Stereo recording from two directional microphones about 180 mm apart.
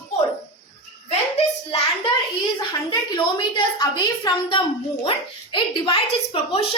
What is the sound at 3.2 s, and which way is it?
Speech, 25° left (ahead or behind).